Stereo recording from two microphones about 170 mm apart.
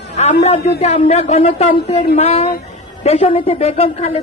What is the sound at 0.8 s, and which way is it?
A woman's voice, 40° left (ahead or behind).